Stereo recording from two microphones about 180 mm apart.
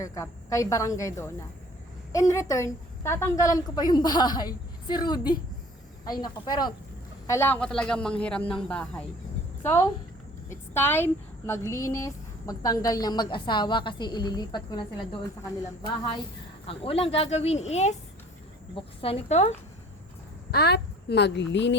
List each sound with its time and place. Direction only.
0.0 s a man's voice: 15° left (ahead or behind)
7.3 s a man's voice: 15° left (ahead or behind)
10.5 s speech: 10° left (ahead or behind)
16.6 s speech: 30° left (ahead or behind)
20.5 s a woman's voice: 65° left (ahead or behind)